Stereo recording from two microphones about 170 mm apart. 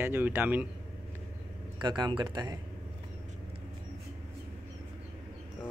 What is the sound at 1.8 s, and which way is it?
Speech, 25° right (ahead or behind).